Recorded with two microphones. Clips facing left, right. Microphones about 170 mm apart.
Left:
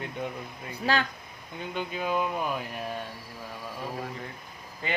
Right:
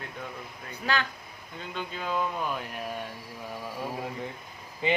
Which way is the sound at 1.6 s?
15° left (ahead or behind).